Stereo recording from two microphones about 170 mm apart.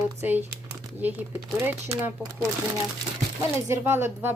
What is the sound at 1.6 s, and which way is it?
Speech, 10° right (ahead or behind).